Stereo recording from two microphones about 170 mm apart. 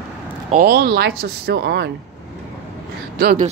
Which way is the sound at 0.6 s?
75° right (ahead or behind).